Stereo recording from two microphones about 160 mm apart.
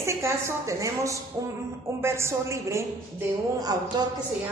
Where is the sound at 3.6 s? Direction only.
25° right (ahead or behind).